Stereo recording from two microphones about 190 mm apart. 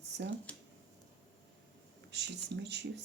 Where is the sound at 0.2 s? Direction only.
70° right (ahead or behind).